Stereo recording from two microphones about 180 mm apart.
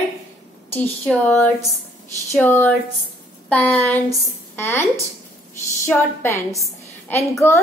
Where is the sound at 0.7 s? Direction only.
10° left (ahead or behind).